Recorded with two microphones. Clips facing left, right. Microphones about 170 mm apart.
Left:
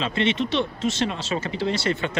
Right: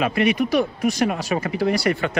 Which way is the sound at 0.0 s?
25° left (ahead or behind).